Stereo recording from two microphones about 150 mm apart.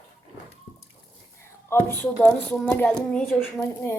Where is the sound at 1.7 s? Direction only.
15° left (ahead or behind).